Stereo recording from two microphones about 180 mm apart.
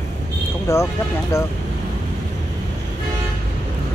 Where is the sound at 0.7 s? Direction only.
15° left (ahead or behind).